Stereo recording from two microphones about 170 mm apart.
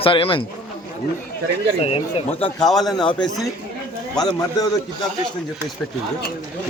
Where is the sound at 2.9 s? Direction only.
30° left (ahead or behind).